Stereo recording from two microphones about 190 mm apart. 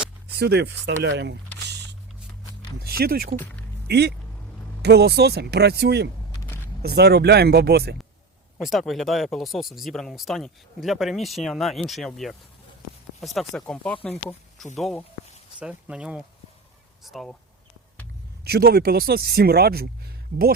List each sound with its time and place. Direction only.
0.3 s speech: 60° right (ahead or behind)
1.6 s vehicle: 65° right (ahead or behind)
2.8 s speech: 50° right (ahead or behind)
8.5 s speech: centre (ahead or behind)
15.5 s speech: 5° right (ahead or behind)
18.4 s speech: 55° right (ahead or behind)